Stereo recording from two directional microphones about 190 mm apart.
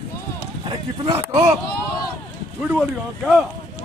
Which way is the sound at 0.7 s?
25° right (ahead or behind).